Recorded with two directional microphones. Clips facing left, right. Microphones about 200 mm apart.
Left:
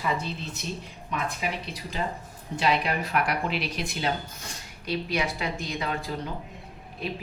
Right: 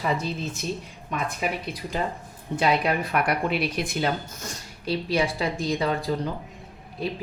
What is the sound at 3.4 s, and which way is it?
Speech, 50° right (ahead or behind).